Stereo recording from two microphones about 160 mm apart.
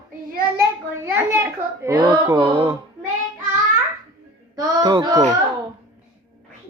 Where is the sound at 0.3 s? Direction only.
65° right (ahead or behind).